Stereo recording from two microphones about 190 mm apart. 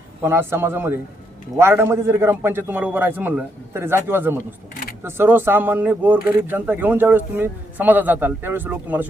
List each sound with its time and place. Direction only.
0.2 s speech: 10° right (ahead or behind)
4.7 s a sound: 50° left (ahead or behind)
5.0 s speech: 10° right (ahead or behind)